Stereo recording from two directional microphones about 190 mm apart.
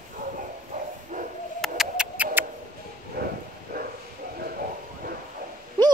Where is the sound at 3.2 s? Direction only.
55° right (ahead or behind).